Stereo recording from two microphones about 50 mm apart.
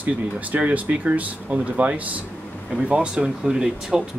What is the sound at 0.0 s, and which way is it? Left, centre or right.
Speech, right.